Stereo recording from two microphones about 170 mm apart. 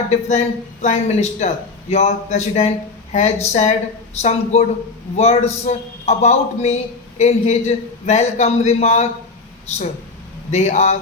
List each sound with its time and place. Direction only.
0.1 s a man's voice: 40° left (ahead or behind)
10.5 s speech: 40° left (ahead or behind)